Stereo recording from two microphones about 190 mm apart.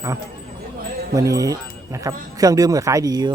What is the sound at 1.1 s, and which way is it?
A man's voice, 20° right (ahead or behind).